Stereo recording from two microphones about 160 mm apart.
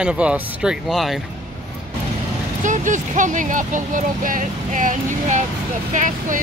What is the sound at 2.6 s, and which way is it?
Speech, 50° right (ahead or behind).